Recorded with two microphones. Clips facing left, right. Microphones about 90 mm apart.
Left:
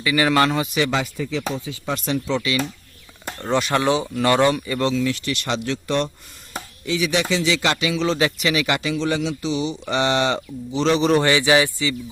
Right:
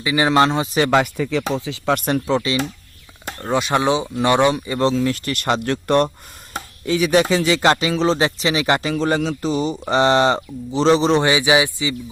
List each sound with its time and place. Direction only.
0.0 s speech: 25° right (ahead or behind)
0.9 s speech: 60° right (ahead or behind)
1.5 s speech: 90° right; by 2.6 s 30° right (ahead or behind)
3.4 s a man's voice: 15° right (ahead or behind); by 11.2 s 30° right (ahead or behind)
11.2 s speech: 15° right (ahead or behind)